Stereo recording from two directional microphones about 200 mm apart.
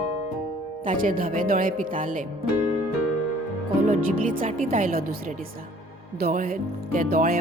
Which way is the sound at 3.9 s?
40° right (ahead or behind).